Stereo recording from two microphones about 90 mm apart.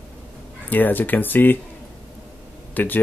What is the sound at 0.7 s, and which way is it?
Speech, 20° left (ahead or behind).